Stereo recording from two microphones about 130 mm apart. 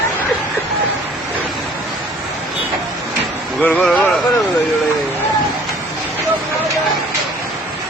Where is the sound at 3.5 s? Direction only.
10° left (ahead or behind).